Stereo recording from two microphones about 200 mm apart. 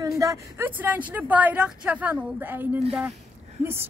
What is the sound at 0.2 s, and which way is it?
A woman's voice, 15° right (ahead or behind).